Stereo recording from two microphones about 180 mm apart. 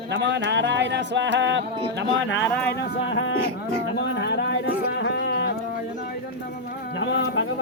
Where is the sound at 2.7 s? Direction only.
90° left.